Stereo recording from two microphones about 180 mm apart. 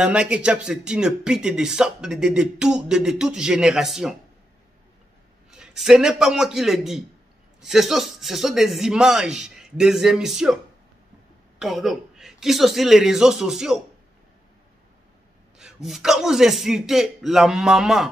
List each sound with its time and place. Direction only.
0.0 s speech: 5° right (ahead or behind)
5.5 s speech: 5° right (ahead or behind)
11.6 s speech: centre (ahead or behind)
15.6 s speech: centre (ahead or behind)